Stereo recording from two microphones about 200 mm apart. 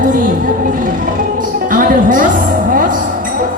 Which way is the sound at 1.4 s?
45° right (ahead or behind).